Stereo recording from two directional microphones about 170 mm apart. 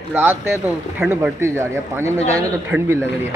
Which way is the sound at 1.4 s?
15° right (ahead or behind).